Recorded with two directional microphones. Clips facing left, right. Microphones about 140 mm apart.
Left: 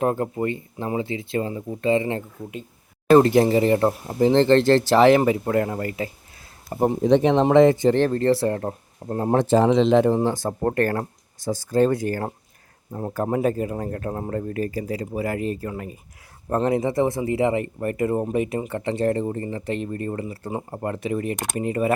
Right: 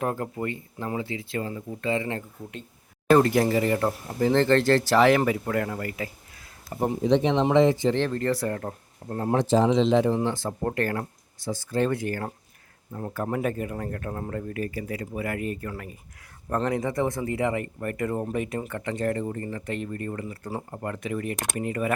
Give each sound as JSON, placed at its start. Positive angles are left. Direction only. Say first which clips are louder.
{"t": 0.0, "sound": "speech", "louder": "left 6 dB", "side_deg": 25}
{"t": 6.7, "sound": "speech", "louder": "left 4 dB", "side_deg": 45}
{"t": 8.2, "sound": "speech", "louder": "left 6 dB", "side_deg": 30}
{"t": 9.3, "sound": "speech", "louder": "left 3 dB", "side_deg": 55}
{"t": 10.2, "sound": "speech", "louder": "left 4 dB", "side_deg": 40}